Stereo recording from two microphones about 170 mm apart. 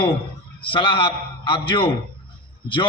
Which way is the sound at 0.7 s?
30° left (ahead or behind).